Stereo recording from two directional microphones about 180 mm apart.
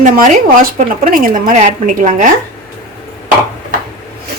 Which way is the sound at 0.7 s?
50° right (ahead or behind).